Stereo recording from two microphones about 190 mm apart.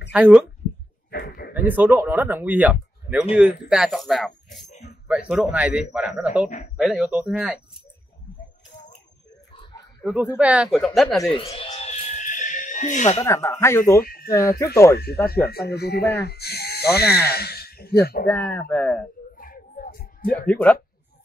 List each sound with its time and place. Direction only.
0.1 s speech: 5° right (ahead or behind)
1.1 s a sound: 50° left (ahead or behind)
1.5 s speech: 10° right (ahead or behind)
4.6 s music: 35° left (ahead or behind)
5.0 s speech: 5° right (ahead or behind)
10.0 s speech: 5° right (ahead or behind)
11.3 s a sound: 30° left (ahead or behind)
13.2 s speech: 15° left (ahead or behind)
14.0 s a sound: 50° left (ahead or behind)
14.3 s speech: 15° left (ahead or behind)
15.4 s speech: 55° left (ahead or behind)
18.2 s speech: 5° left (ahead or behind)
19.3 s a sound: 45° left (ahead or behind)
20.4 s speech: 10° left (ahead or behind)